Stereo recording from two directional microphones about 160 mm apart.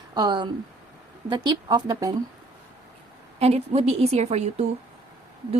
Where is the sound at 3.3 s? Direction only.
40° right (ahead or behind).